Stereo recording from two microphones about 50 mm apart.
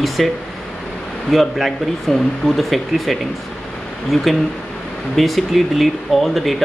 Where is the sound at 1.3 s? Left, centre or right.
Centre.